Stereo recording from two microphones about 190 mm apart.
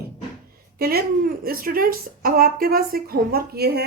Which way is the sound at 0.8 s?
55° right (ahead or behind).